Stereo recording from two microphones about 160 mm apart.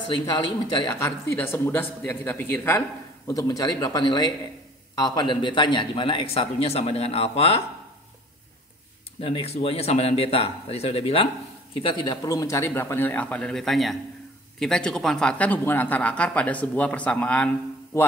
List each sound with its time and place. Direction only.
0.1 s speech: 30° left (ahead or behind)
0.9 s speech: 15° left (ahead or behind); by 7.6 s 40° left (ahead or behind)
9.2 s speech: 35° left (ahead or behind); by 17.5 s 5° left (ahead or behind)